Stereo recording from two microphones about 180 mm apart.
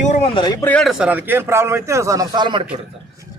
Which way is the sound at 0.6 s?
5° left (ahead or behind).